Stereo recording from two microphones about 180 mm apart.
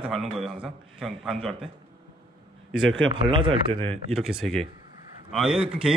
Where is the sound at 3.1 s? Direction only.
30° right (ahead or behind).